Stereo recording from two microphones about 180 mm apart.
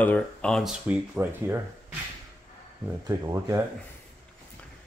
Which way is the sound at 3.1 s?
20° right (ahead or behind).